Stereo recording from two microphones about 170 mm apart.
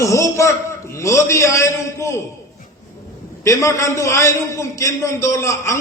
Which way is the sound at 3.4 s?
20° left (ahead or behind).